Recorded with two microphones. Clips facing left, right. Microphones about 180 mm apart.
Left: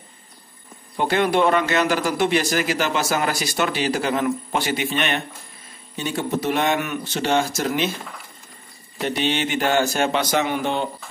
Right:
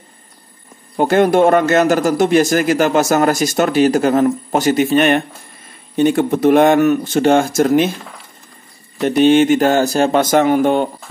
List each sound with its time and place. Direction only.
0.9 s a man's voice: 45° right (ahead or behind)
9.0 s a man's voice: 45° right (ahead or behind)